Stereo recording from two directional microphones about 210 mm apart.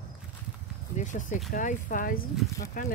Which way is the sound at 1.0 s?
35° left (ahead or behind).